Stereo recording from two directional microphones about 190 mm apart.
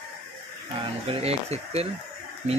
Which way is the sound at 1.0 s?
35° right (ahead or behind).